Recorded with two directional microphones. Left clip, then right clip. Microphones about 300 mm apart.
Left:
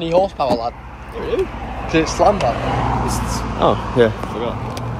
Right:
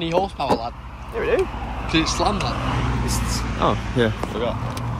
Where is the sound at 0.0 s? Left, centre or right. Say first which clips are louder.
Left 6 dB; centre.